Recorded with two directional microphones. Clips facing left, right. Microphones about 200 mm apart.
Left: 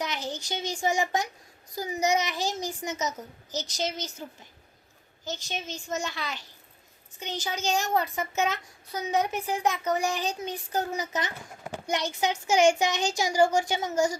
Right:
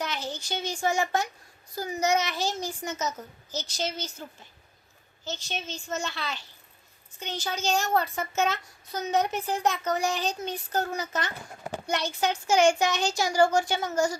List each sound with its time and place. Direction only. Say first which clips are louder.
0.0 s a child's voice: even; 15° left (ahead or behind)